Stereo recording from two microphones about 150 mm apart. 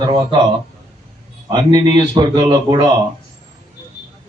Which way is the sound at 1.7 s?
30° right (ahead or behind).